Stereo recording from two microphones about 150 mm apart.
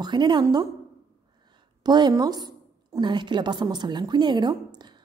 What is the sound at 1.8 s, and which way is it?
A woman's voice, 30° right (ahead or behind).